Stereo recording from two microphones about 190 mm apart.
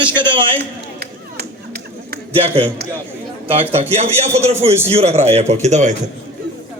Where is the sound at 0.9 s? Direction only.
55° right (ahead or behind).